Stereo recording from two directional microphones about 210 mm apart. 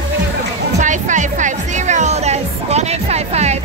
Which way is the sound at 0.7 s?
35° right (ahead or behind).